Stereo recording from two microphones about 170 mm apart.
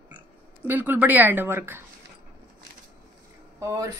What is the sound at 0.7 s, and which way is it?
Speech, 10° right (ahead or behind).